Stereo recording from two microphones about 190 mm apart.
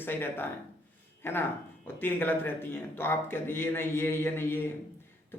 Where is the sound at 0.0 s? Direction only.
10° left (ahead or behind).